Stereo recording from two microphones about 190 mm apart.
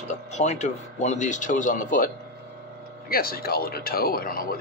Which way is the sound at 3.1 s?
50° left (ahead or behind).